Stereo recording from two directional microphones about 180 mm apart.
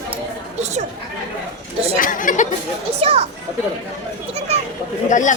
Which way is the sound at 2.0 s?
50° left (ahead or behind).